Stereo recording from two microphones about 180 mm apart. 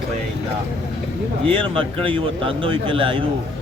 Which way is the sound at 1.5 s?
30° right (ahead or behind).